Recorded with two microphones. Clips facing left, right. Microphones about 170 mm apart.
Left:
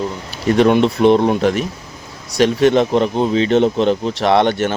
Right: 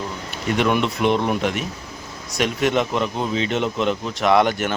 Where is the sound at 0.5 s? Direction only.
35° left (ahead or behind).